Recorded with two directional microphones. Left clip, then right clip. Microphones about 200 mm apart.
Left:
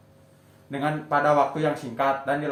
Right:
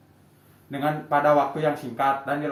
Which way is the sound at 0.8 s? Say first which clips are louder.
Right 1 dB; 10° left (ahead or behind).